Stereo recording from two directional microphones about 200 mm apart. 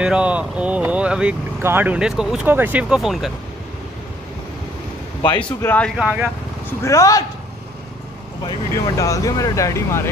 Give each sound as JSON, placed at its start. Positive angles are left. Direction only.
{"t": 0.0, "sound": "speech", "side_deg": -5}
{"t": 5.4, "sound": "speech", "side_deg": 10}
{"t": 5.9, "sound": "speech", "side_deg": -5}
{"t": 6.8, "sound": "speech", "side_deg": 15}
{"t": 8.5, "sound": "speech", "side_deg": 20}